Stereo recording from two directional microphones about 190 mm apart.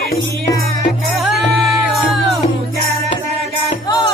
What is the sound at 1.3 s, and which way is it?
Music, centre (ahead or behind).